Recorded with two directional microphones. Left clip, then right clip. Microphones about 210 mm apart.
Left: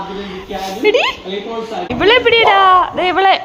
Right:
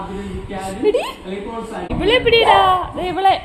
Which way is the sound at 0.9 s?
10° left (ahead or behind).